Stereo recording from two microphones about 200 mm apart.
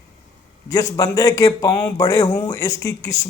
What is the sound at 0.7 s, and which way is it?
A man's voice, 20° left (ahead or behind).